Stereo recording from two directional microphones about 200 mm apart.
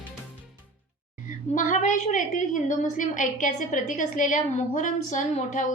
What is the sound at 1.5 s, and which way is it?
A woman's voice, 40° left (ahead or behind).